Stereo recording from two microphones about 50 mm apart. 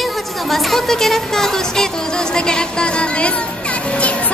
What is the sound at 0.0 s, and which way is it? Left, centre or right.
A woman's voice, centre.